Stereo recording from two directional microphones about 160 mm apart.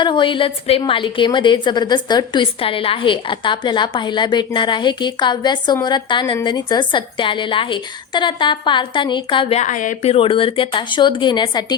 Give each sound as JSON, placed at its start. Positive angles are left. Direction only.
{"t": 0.0, "sound": "a woman's voice", "side_deg": 30}
{"t": 9.6, "sound": "speech", "side_deg": 50}